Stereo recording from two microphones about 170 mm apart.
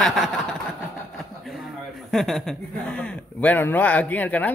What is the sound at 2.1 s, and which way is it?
Speech, centre (ahead or behind).